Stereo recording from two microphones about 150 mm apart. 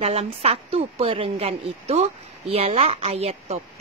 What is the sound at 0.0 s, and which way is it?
A woman's voice, 45° right (ahead or behind).